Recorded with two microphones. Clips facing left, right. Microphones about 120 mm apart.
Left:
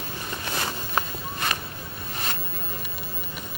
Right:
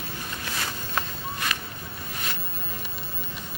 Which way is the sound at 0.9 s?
35° left (ahead or behind).